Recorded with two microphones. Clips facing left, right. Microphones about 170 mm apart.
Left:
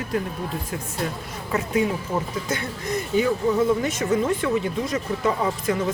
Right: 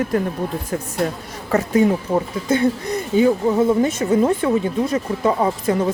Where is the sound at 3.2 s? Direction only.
30° right (ahead or behind).